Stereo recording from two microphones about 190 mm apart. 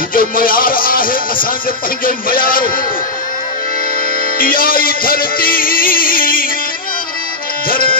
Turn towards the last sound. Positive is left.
turn(degrees=50)  # may be behind; listen again after turning